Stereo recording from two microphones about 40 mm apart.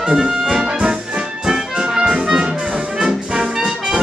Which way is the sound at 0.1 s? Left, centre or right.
Centre.